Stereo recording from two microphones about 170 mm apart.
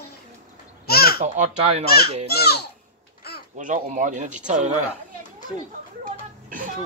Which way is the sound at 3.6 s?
50° right (ahead or behind).